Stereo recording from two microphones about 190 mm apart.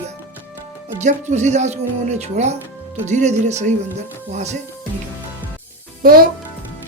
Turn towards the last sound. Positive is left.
turn(degrees=-50)  # may be behind; listen again after turning